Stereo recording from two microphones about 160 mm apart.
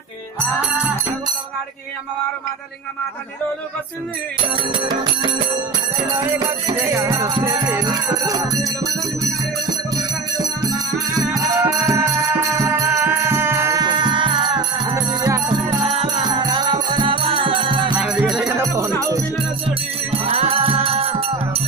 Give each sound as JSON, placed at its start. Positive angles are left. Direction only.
{"t": 4.7, "sound": "music", "side_deg": -30}
{"t": 6.1, "sound": "music", "side_deg": -20}
{"t": 9.7, "sound": "music", "side_deg": -25}
{"t": 18.5, "sound": "music", "side_deg": -20}
{"t": 20.1, "sound": "music", "side_deg": -35}